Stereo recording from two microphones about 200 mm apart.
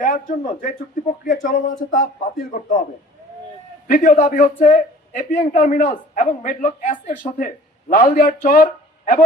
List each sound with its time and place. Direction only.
0.0 s a man's voice: 40° left (ahead or behind)
3.9 s a man's voice: 40° left (ahead or behind)